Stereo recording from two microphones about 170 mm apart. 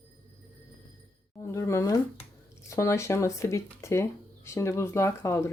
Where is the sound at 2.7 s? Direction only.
20° left (ahead or behind).